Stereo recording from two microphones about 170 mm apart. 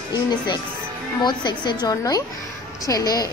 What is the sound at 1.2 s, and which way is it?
A child's voice, 25° left (ahead or behind).